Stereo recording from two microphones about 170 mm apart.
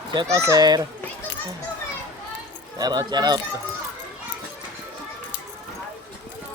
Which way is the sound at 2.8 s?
25° right (ahead or behind).